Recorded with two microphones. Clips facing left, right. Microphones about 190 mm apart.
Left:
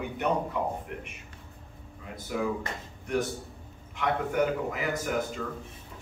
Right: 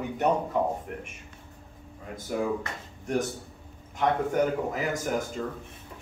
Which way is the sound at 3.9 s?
40° right (ahead or behind).